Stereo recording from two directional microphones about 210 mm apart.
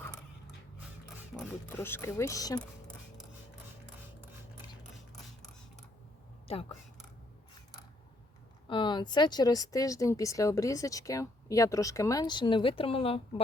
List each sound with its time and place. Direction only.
1.7 s speech: 10° left (ahead or behind)
2.6 s a sound: 5° left (ahead or behind)
6.5 s speech: 30° left (ahead or behind)
8.6 s speech: 20° left (ahead or behind)